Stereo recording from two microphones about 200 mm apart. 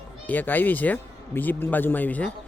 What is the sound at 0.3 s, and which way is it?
A man's voice, 10° left (ahead or behind).